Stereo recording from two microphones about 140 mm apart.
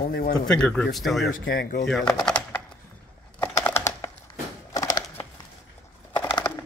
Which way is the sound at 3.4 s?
20° left (ahead or behind).